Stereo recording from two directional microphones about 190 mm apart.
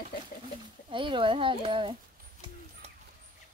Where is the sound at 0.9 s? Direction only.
25° right (ahead or behind).